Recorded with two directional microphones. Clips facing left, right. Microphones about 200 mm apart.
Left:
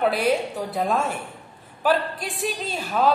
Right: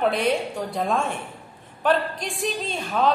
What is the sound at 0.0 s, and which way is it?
A woman's voice, 5° left (ahead or behind).